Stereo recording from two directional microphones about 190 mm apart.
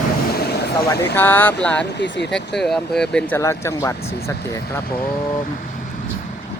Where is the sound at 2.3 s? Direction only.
Centre (ahead or behind).